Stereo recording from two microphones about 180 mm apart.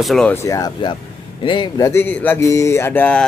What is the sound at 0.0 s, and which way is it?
Speech, centre (ahead or behind).